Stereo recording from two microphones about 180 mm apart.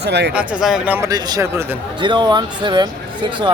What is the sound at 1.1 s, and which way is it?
Speech, 20° right (ahead or behind).